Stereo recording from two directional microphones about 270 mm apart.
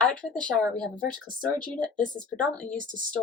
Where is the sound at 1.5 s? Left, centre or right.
Centre.